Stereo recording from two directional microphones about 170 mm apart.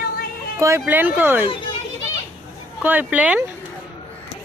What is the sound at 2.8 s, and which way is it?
Speech, 10° right (ahead or behind).